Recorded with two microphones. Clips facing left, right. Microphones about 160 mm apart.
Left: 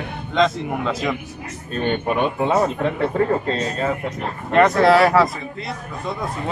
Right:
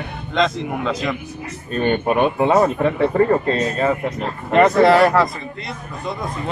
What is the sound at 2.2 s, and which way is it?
Speech, 65° right (ahead or behind).